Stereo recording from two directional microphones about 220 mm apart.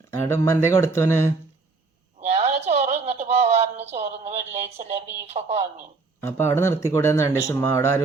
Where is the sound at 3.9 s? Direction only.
30° right (ahead or behind).